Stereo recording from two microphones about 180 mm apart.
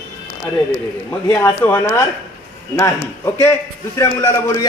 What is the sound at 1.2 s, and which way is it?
Speech, 15° left (ahead or behind).